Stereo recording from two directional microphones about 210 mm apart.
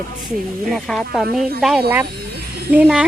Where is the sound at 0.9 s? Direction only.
5° left (ahead or behind).